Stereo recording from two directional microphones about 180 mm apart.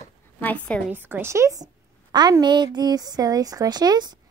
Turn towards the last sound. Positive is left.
turn(degrees=-20)  # may be behind; listen again after turning